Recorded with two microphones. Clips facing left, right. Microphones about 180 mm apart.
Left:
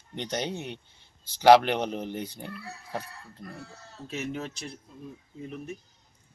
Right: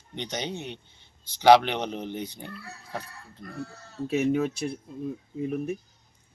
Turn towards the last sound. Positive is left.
turn(degrees=-55)  # may be behind; listen again after turning